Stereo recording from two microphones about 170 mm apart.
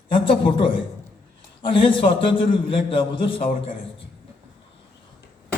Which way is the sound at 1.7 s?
30° left (ahead or behind).